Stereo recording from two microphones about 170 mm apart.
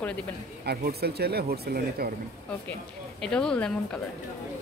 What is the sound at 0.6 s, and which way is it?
Speech, 70° right (ahead or behind).